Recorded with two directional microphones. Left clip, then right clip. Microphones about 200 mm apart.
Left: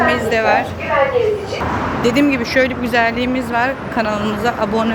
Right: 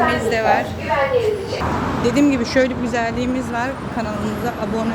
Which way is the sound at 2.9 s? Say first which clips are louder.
Left 5 dB; 5° right (ahead or behind).